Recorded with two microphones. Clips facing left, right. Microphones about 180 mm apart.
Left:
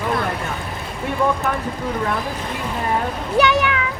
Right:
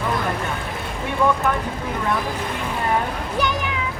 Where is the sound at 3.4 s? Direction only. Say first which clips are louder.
Left 8 dB; 75° left (ahead or behind).